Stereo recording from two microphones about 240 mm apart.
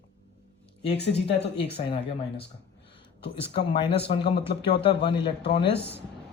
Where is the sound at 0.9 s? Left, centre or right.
Left.